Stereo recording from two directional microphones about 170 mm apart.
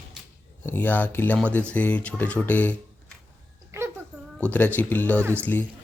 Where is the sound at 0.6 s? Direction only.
10° left (ahead or behind).